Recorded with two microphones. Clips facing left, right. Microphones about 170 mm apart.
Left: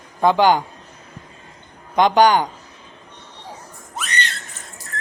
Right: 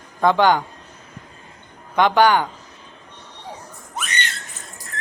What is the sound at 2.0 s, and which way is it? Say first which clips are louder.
Speech: left 1 dB; 15° left (ahead or behind).